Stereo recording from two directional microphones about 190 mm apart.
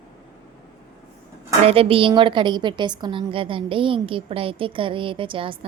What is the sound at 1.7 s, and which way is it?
A woman's voice, 30° right (ahead or behind).